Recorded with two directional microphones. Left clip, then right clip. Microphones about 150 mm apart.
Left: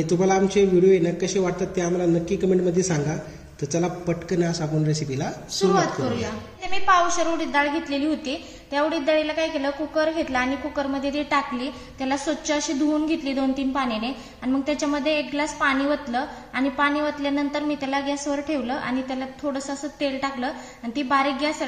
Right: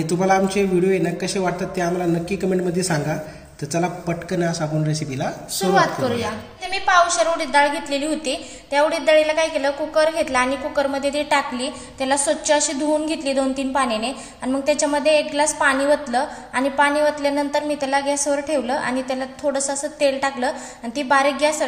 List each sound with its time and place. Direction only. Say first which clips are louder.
0.1 s a man's voice: right 2 dB; centre (ahead or behind)
6.7 s a woman's voice: right 3 dB; 55° right (ahead or behind)